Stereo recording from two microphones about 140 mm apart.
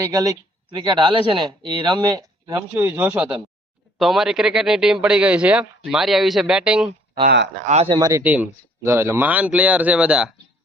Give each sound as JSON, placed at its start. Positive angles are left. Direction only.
{"t": 0.0, "sound": "speech", "side_deg": -25}
{"t": 2.7, "sound": "speech", "side_deg": -10}
{"t": 7.2, "sound": "speech", "side_deg": -55}
{"t": 7.9, "sound": "speech", "side_deg": -30}
{"t": 8.2, "sound": "speech", "side_deg": -10}